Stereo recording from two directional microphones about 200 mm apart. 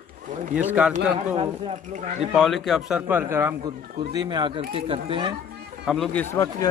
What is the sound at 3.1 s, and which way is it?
Speech, 10° right (ahead or behind).